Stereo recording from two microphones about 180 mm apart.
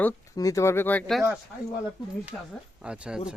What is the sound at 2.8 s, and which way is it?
Speech, 5° right (ahead or behind).